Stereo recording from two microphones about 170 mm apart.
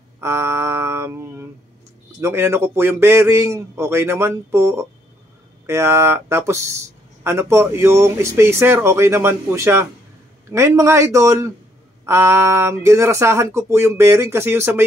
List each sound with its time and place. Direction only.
0.2 s mantra: 15° right (ahead or behind)
2.1 s speech: 15° right (ahead or behind)